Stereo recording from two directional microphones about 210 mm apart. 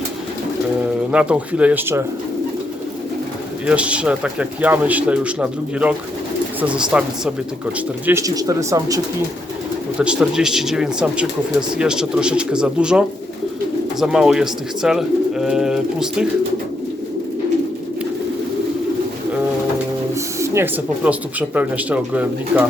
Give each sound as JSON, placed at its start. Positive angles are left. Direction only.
{"t": 1.1, "sound": "speech", "side_deg": -5}
{"t": 3.7, "sound": "speech", "side_deg": -5}
{"t": 8.0, "sound": "speech", "side_deg": -15}
{"t": 10.0, "sound": "speech", "side_deg": -5}
{"t": 20.1, "sound": "speech", "side_deg": -15}